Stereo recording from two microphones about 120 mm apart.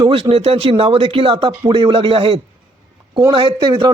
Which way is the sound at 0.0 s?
50° right (ahead or behind).